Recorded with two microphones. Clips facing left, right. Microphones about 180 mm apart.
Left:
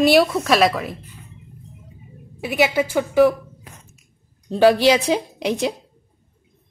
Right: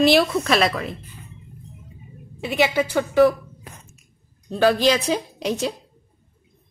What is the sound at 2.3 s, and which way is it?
A woman's voice, 10° left (ahead or behind).